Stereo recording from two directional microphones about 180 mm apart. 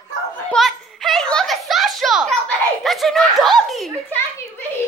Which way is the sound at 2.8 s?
Centre (ahead or behind).